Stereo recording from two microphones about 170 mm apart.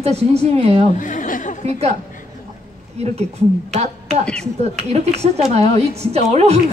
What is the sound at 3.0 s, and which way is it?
A woman's voice, 40° right (ahead or behind).